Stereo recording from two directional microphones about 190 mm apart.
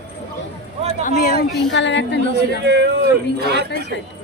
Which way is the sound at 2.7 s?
65° right (ahead or behind).